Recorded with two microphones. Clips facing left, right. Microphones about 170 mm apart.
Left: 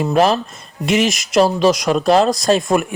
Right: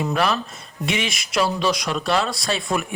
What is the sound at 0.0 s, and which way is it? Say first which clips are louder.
Speech: left 7 dB; 40° left (ahead or behind).